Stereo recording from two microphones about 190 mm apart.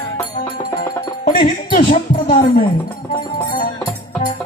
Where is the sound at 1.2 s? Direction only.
45° left (ahead or behind).